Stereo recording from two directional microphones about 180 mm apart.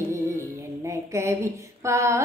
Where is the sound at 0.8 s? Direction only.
15° right (ahead or behind).